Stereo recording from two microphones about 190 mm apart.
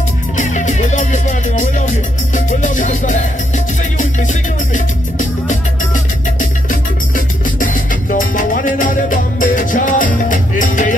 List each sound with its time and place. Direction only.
0.4 s music: 40° left (ahead or behind)
6.7 s music: 45° left (ahead or behind)